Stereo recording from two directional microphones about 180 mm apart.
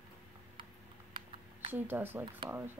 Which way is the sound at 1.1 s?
30° right (ahead or behind).